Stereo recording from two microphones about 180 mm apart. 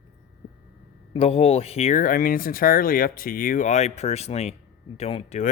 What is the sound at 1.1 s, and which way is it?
Speech, 30° left (ahead or behind).